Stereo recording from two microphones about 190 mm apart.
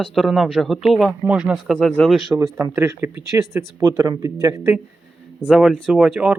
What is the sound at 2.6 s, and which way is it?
Speech, 15° right (ahead or behind).